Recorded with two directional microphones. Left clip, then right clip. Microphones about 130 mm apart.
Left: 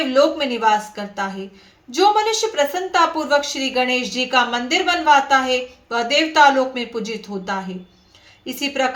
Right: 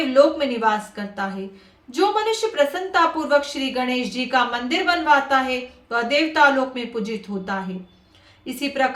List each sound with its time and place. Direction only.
0.1 s speech: 15° left (ahead or behind)